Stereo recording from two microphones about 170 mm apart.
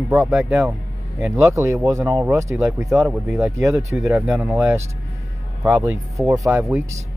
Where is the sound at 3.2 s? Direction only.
5° right (ahead or behind).